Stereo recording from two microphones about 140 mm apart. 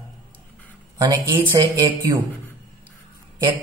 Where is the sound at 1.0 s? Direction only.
30° right (ahead or behind).